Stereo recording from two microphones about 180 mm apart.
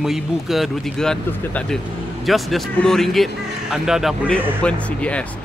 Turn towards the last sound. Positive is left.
turn(degrees=5)  # may be behind; listen again after turning